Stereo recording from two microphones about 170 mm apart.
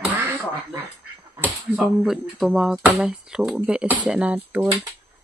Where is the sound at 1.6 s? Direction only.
5° right (ahead or behind).